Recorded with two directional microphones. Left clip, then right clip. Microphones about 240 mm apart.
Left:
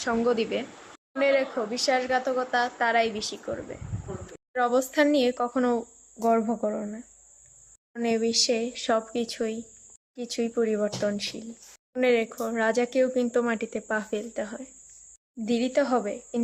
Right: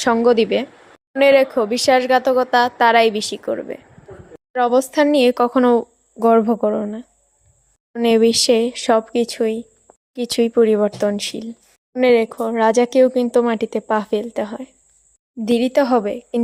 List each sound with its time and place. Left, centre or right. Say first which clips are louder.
0.0 s speech: right 11 dB; right